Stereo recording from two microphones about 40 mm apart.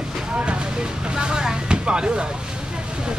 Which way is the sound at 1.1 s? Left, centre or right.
Right.